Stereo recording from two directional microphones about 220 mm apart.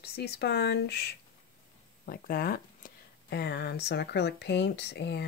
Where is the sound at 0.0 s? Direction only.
45° left (ahead or behind).